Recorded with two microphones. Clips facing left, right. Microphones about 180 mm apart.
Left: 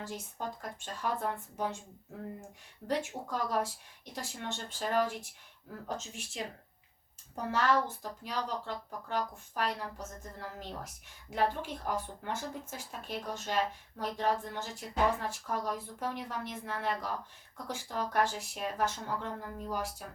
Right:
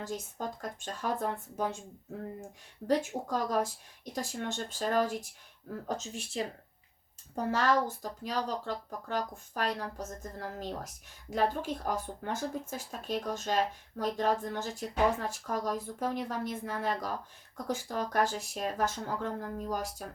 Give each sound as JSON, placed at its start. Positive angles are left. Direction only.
{"t": 0.0, "sound": "speech", "side_deg": -45}
{"t": 2.8, "sound": "speech", "side_deg": -40}
{"t": 6.4, "sound": "speech", "side_deg": -35}